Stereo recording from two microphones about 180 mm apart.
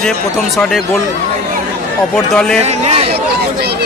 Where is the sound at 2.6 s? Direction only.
35° right (ahead or behind).